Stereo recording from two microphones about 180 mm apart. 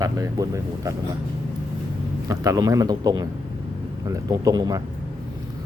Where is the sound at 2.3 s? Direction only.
20° right (ahead or behind).